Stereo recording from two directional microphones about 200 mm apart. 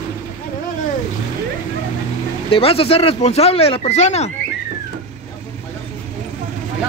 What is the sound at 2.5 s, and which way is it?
Speech, 30° left (ahead or behind).